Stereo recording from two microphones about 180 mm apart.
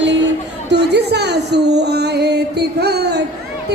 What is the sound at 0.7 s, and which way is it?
Music, 70° right (ahead or behind).